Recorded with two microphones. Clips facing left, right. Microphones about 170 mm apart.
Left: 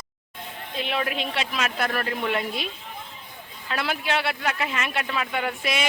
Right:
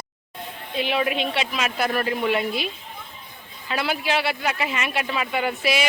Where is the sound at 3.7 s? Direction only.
5° right (ahead or behind).